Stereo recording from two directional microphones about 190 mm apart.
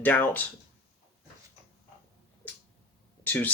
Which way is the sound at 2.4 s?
10° left (ahead or behind).